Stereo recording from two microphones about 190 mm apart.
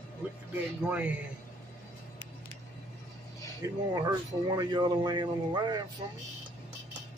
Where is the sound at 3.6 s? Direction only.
15° right (ahead or behind).